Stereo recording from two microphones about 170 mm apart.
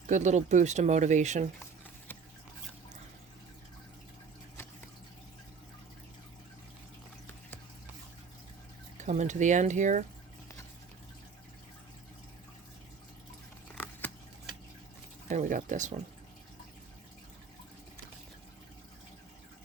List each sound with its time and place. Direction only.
0.1 s speech: 45° right (ahead or behind)
9.0 s speech: 45° right (ahead or behind)
13.7 s a sound: 10° left (ahead or behind)
15.3 s speech: 50° right (ahead or behind)